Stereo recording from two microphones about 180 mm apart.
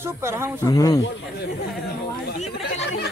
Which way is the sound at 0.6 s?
20° left (ahead or behind).